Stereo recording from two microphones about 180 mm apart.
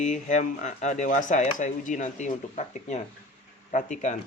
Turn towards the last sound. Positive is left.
turn(degrees=45)  # may be behind; listen again after turning